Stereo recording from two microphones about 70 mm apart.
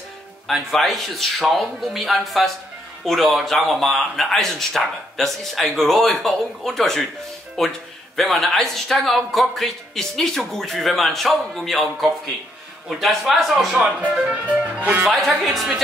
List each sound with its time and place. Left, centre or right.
0.5 s speech: centre
14.1 s music: centre
15.0 s speech: centre